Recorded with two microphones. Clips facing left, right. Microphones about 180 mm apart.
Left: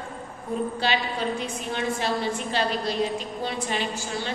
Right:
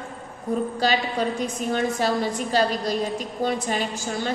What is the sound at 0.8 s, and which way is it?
A woman's voice, 40° right (ahead or behind).